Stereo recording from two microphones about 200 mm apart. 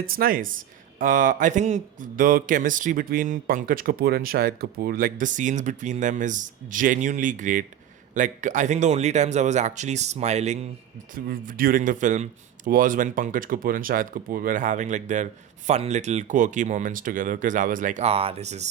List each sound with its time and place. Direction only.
0.0 s speech: 45° right (ahead or behind)